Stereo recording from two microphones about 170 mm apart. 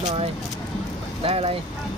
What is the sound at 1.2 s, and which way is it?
Speech, 35° right (ahead or behind).